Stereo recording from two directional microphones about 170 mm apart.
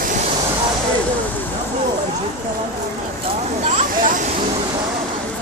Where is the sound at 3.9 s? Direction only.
55° right (ahead or behind).